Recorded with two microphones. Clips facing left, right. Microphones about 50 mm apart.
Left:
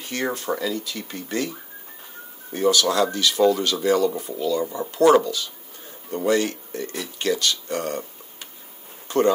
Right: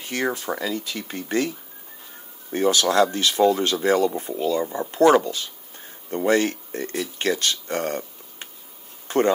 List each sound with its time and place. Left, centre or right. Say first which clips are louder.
0.0 s speech: right 1 dB; right
2.5 s speech: right 1 dB; right
9.0 s a sound: left 1 dB; right